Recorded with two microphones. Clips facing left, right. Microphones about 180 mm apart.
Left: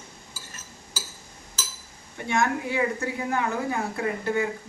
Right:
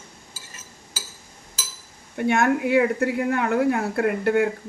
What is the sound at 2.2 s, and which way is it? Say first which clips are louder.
A woman's voice: right 6 dB; 60° right (ahead or behind).